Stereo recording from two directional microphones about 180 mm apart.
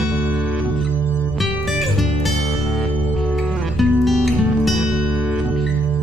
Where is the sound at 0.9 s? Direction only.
10° left (ahead or behind).